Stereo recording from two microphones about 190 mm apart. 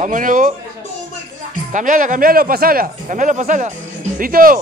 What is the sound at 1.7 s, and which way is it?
A man's voice, 45° right (ahead or behind).